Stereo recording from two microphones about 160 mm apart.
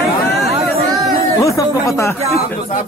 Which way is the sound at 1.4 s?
20° left (ahead or behind).